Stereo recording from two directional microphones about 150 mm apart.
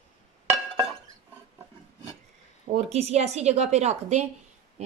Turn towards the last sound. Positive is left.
turn(degrees=-50)  # may be behind; listen again after turning